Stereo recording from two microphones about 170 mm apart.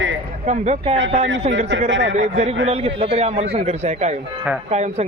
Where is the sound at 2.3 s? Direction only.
35° right (ahead or behind).